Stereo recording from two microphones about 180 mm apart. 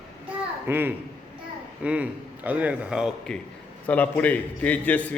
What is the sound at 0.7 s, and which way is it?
A man's voice, 10° right (ahead or behind).